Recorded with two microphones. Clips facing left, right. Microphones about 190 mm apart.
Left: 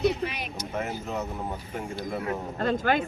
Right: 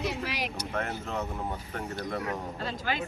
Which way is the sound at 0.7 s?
5° left (ahead or behind).